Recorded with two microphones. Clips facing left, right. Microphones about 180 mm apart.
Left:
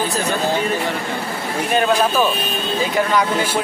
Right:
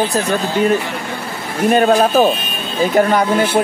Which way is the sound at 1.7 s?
45° right (ahead or behind).